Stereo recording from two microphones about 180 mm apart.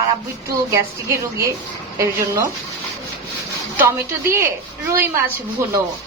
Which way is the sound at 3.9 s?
15° right (ahead or behind).